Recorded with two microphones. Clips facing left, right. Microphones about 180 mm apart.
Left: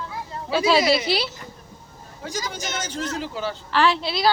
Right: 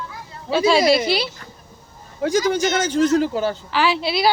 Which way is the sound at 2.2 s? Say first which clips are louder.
Right 13 dB; 65° right (ahead or behind).